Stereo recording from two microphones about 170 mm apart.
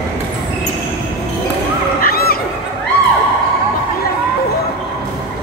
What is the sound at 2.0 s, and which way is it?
Fowl, 60° left (ahead or behind).